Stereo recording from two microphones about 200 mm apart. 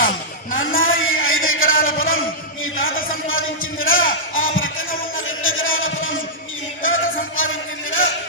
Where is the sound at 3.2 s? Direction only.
85° left.